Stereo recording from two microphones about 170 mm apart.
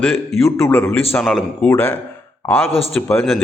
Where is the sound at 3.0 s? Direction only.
10° left (ahead or behind).